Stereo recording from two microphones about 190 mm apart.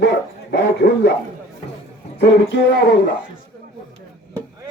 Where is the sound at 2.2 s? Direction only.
70° left (ahead or behind).